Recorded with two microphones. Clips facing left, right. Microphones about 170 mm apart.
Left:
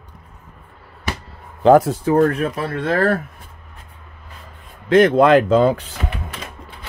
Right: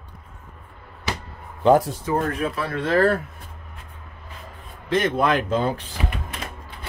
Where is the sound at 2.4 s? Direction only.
45° left (ahead or behind).